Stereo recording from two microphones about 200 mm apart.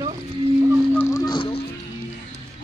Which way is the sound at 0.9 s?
15° left (ahead or behind).